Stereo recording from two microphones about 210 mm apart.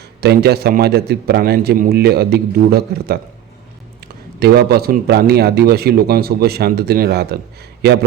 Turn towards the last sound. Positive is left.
turn(degrees=-50)  # may be behind; listen again after turning